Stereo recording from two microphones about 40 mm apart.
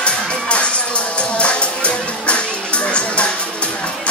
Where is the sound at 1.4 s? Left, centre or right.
Left.